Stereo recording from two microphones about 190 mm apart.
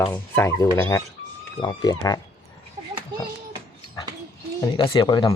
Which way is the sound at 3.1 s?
20° right (ahead or behind).